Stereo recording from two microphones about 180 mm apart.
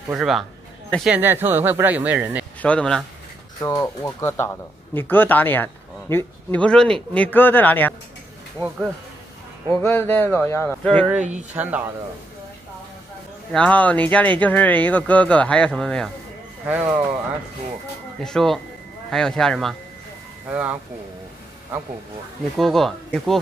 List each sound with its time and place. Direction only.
0.1 s speech: centre (ahead or behind)
1.1 s speech: 10° right (ahead or behind)
2.6 s speech: 5° left (ahead or behind)
3.6 s speech: 15° left (ahead or behind)
8.6 s speech: centre (ahead or behind)
9.7 s speech: 15° left (ahead or behind)
11.1 s speech: 10° right (ahead or behind)
13.5 s speech: 5° left (ahead or behind)
16.6 s speech: 10° right (ahead or behind)
18.2 s speech: 5° left (ahead or behind)
20.4 s speech: 10° right (ahead or behind)
22.6 s speech: centre (ahead or behind)